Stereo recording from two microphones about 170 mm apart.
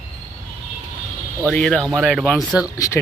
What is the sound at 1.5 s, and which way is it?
Speech, 5° left (ahead or behind).